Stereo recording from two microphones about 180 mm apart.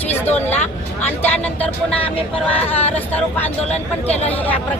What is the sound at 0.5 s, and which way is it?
Speech, 40° left (ahead or behind).